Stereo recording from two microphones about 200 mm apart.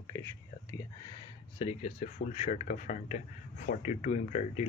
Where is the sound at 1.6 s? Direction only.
30° left (ahead or behind).